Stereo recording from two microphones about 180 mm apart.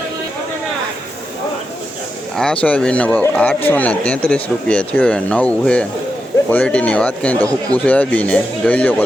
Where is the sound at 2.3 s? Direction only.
5° left (ahead or behind).